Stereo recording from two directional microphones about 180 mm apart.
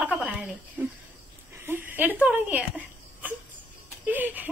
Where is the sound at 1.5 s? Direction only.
10° right (ahead or behind).